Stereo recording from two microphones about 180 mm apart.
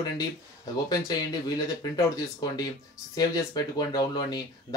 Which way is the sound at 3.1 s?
20° left (ahead or behind).